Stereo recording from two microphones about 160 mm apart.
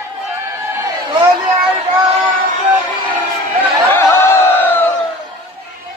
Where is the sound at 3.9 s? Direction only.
15° left (ahead or behind).